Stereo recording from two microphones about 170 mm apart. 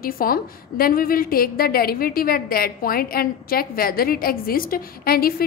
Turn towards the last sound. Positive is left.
turn(degrees=60)  # may be behind; listen again after turning